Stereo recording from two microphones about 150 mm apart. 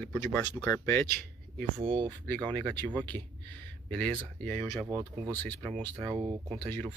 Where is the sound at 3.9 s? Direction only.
10° left (ahead or behind).